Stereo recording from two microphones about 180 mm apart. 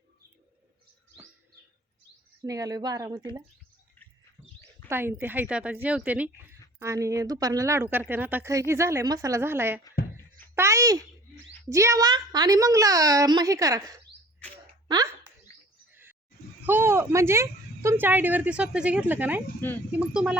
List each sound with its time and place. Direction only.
2.4 s a woman's voice: 20° right (ahead or behind)
4.9 s speech: 10° right (ahead or behind)
10.5 s a sound: 15° right (ahead or behind)
11.7 s a woman's voice: 15° right (ahead or behind)
16.6 s speech: 10° right (ahead or behind)
19.6 s speech: 10° left (ahead or behind)
20.0 s speech: 5° right (ahead or behind)